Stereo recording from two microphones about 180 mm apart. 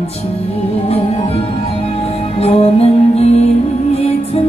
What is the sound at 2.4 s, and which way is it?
Music, 35° left (ahead or behind).